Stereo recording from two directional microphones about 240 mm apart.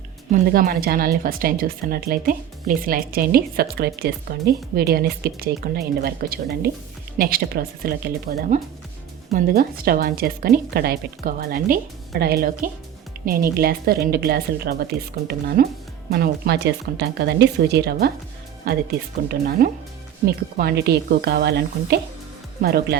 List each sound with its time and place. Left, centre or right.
0.3 s speech: right
19.3 s speech: right